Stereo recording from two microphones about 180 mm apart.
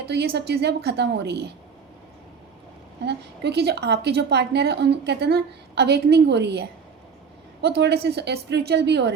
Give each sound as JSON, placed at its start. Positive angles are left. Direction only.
{"t": 0.0, "sound": "a woman's voice", "side_deg": -65}
{"t": 3.0, "sound": "a woman's voice", "side_deg": -70}